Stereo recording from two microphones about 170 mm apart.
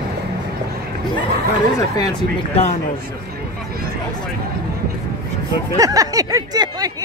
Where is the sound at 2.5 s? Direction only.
40° left (ahead or behind).